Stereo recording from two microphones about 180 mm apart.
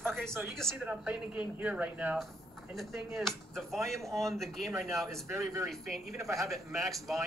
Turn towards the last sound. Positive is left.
turn(degrees=0)  # may be behind; listen again after turning